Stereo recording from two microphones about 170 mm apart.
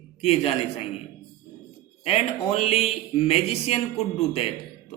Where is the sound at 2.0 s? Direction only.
35° left (ahead or behind).